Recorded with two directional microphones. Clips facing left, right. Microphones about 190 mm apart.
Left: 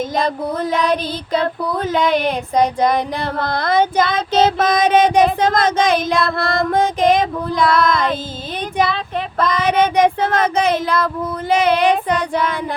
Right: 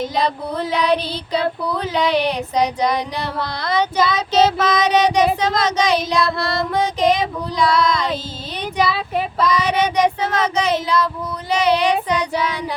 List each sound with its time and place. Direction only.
0.2 s female singing: 45° left (ahead or behind)
9.4 s female singing: 55° left (ahead or behind)